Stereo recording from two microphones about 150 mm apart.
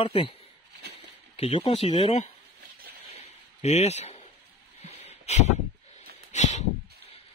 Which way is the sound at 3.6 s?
45° left (ahead or behind).